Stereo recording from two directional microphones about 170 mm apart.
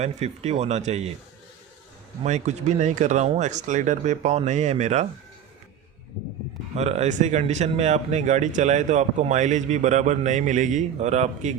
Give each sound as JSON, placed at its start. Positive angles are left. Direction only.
{"t": 0.0, "sound": "speech", "side_deg": -40}
{"t": 2.2, "sound": "speech", "side_deg": -40}
{"t": 6.7, "sound": "speech", "side_deg": -40}